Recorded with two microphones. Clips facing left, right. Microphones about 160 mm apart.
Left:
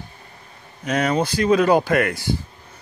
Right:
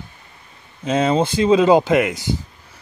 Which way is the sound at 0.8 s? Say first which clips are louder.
Right 3 dB; 25° right (ahead or behind).